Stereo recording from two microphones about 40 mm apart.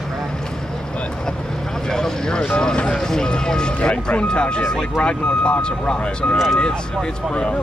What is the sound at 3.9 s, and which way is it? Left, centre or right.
Speech, left.